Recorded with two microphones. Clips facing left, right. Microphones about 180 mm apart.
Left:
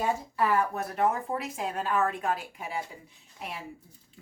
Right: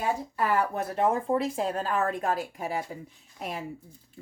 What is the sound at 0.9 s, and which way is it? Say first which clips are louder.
Speech: right 3 dB; 25° right (ahead or behind).